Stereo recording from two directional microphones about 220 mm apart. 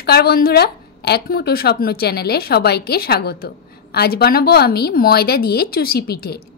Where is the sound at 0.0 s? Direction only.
45° left (ahead or behind).